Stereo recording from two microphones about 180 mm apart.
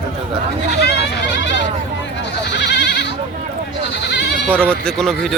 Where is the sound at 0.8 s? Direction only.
75° left (ahead or behind).